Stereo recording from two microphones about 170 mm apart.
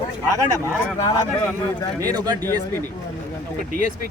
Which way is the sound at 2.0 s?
20° right (ahead or behind).